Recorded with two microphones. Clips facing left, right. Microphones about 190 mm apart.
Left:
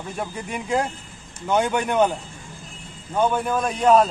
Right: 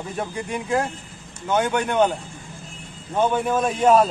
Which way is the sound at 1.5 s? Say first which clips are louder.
Even; 10° left (ahead or behind).